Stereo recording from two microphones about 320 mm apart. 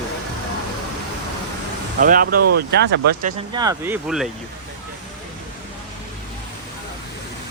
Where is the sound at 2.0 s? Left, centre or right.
Right.